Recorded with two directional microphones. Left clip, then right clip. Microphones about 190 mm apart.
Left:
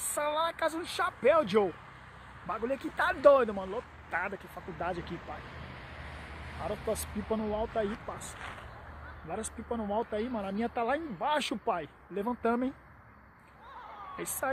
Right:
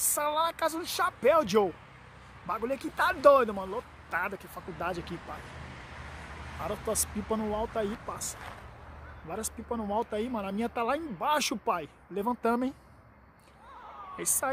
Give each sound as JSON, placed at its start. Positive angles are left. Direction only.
{"t": 0.1, "sound": "speech", "side_deg": -15}
{"t": 5.1, "sound": "vehicle", "side_deg": -50}
{"t": 6.9, "sound": "speech", "side_deg": -15}
{"t": 9.3, "sound": "speech", "side_deg": -15}
{"t": 14.1, "sound": "speech", "side_deg": -15}